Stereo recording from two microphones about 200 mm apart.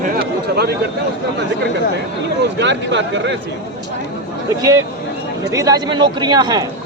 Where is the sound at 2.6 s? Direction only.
60° right (ahead or behind).